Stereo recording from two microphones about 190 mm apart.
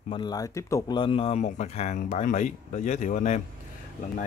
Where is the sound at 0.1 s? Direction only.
20° left (ahead or behind).